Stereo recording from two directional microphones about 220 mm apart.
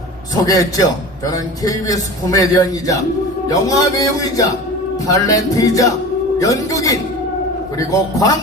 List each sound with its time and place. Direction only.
0.3 s a man's voice: 15° left (ahead or behind)